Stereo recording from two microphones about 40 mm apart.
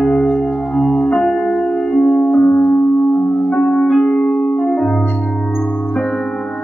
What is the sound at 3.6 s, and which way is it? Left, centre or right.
Music, centre.